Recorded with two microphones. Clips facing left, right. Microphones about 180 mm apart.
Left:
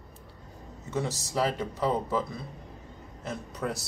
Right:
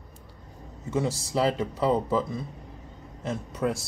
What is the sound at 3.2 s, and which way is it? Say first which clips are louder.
Speech: right 5 dB; 25° right (ahead or behind).